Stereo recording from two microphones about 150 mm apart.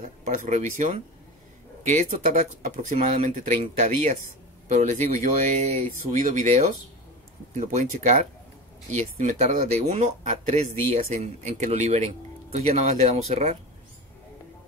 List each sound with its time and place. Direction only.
0.2 s speech: 55° right (ahead or behind)